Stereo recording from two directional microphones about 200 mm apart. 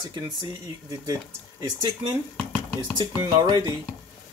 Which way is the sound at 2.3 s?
10° left (ahead or behind).